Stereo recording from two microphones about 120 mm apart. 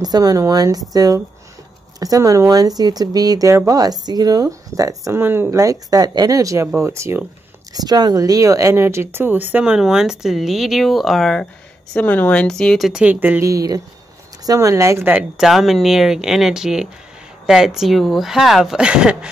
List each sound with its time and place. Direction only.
0.0 s speech: 30° right (ahead or behind)
7.7 s speech: 35° right (ahead or behind); by 13.0 s centre (ahead or behind)
13.0 s speech: 15° right (ahead or behind)
13.4 s speech: 30° right (ahead or behind)
15.3 s speech: centre (ahead or behind)